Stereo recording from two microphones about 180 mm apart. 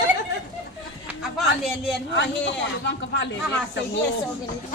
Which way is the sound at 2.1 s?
75° left (ahead or behind).